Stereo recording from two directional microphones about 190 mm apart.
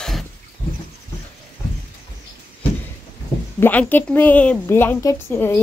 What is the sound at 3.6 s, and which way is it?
A woman's voice, 10° left (ahead or behind).